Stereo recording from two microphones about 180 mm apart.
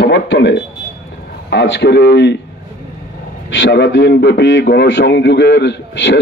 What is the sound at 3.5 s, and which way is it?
A man's voice, 85° left.